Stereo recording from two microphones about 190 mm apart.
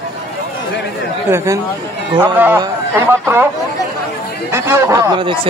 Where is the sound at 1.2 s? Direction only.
15° right (ahead or behind).